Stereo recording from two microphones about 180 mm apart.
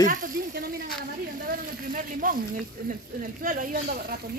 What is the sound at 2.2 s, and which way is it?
Speech, 50° right (ahead or behind).